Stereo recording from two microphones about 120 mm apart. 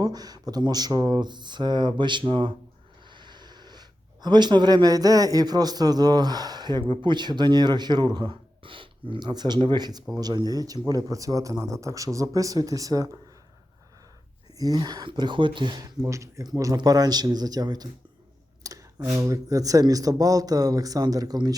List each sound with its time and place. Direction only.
0.0 s a man's voice: 35° right (ahead or behind)
14.6 s speech: 30° right (ahead or behind)
18.6 s clicking: 30° right (ahead or behind)
19.2 s speech: 30° right (ahead or behind)